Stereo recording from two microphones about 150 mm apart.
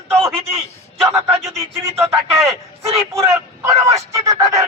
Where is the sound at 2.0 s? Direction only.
45° right (ahead or behind).